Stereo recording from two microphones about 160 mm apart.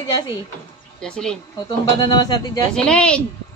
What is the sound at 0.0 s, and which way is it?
Speech, 25° left (ahead or behind).